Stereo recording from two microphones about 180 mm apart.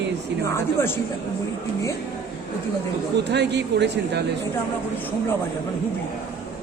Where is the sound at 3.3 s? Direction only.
70° right (ahead or behind).